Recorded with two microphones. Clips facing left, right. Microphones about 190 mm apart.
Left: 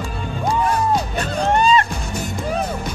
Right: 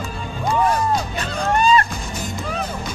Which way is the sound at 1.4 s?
25° left (ahead or behind).